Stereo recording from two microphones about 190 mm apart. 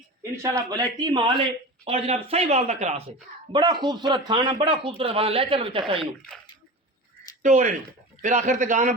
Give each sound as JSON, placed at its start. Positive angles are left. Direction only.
{"t": 0.2, "sound": "a man's voice", "side_deg": -15}
{"t": 3.5, "sound": "a man's voice", "side_deg": -25}
{"t": 7.4, "sound": "speech", "side_deg": -40}